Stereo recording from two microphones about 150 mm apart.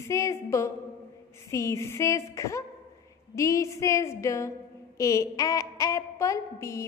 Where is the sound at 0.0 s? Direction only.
20° left (ahead or behind).